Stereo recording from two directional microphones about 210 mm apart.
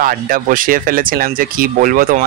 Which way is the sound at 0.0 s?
40° right (ahead or behind).